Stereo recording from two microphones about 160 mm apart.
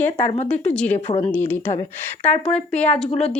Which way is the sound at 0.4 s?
5° left (ahead or behind).